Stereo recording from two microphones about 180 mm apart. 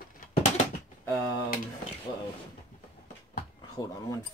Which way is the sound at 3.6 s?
20° left (ahead or behind).